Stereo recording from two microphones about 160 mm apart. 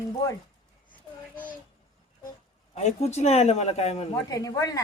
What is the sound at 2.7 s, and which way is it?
Speech, 45° left (ahead or behind).